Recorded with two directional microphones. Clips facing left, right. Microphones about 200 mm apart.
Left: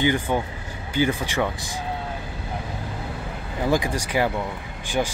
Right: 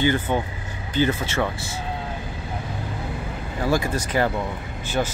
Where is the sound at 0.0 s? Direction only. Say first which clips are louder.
Even; 15° left (ahead or behind).